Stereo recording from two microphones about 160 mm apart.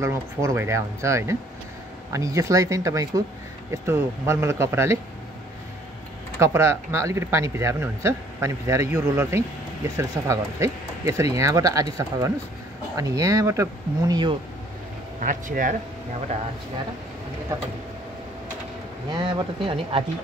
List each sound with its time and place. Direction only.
0.0 s speech: 20° right (ahead or behind)
6.4 s speech: 15° right (ahead or behind)
15.1 s speech: 55° right (ahead or behind)
19.1 s speech: 30° right (ahead or behind)